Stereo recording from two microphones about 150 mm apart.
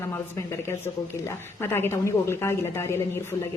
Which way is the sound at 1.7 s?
15° left (ahead or behind).